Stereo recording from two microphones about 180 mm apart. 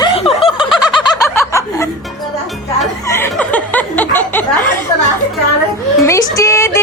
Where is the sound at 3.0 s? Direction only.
15° left (ahead or behind).